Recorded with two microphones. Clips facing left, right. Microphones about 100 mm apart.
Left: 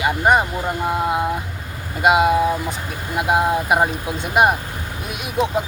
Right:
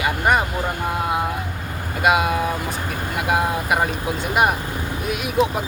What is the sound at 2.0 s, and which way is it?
Speech, 25° left (ahead or behind).